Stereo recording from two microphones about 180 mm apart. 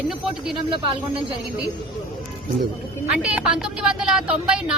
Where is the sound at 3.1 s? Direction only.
5° right (ahead or behind).